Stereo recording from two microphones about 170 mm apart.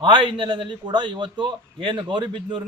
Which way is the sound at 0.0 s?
30° right (ahead or behind).